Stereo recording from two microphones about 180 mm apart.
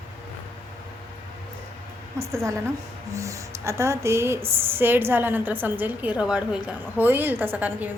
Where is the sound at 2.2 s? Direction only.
15° right (ahead or behind).